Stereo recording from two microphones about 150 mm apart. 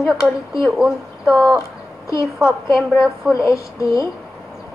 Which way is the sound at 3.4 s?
20° left (ahead or behind).